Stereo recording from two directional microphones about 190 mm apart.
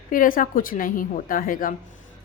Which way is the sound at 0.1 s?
45° left (ahead or behind).